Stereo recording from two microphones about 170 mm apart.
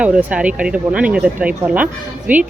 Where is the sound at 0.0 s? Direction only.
5° right (ahead or behind).